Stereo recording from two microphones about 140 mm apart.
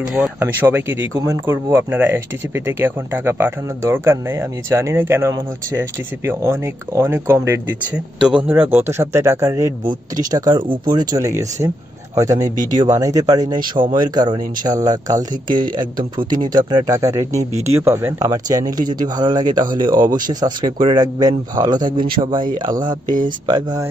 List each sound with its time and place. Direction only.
0.0 s speech: 10° right (ahead or behind); by 23.9 s 30° right (ahead or behind)